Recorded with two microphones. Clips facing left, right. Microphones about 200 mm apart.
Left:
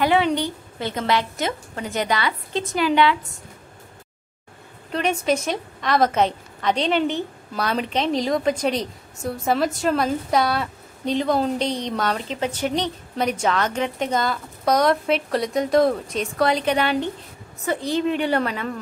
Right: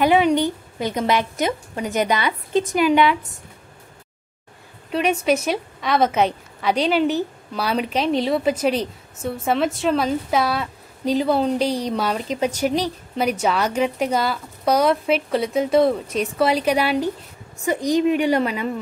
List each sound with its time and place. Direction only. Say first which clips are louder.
0.0 s a woman's voice: right 3 dB; 15° right (ahead or behind)
4.9 s a woman's voice: right 2 dB; 5° right (ahead or behind)